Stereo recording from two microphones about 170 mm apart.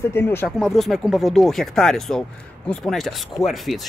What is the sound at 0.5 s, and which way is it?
Speech, centre (ahead or behind).